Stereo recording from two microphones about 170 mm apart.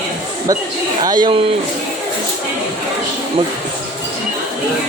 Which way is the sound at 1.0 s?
25° right (ahead or behind).